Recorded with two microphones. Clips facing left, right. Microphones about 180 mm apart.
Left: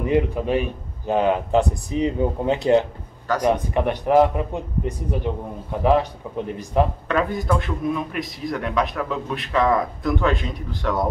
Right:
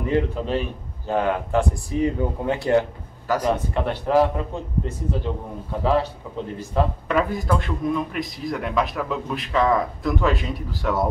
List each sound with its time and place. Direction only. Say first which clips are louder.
0.0 s a man's voice: left 2 dB; 15° left (ahead or behind)
7.1 s a man's voice: even; 5° right (ahead or behind)